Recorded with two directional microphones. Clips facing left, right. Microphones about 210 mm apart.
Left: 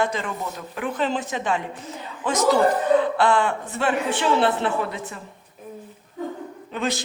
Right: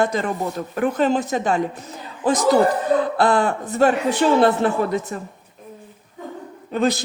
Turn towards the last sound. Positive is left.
turn(degrees=-40)  # may be behind; listen again after turning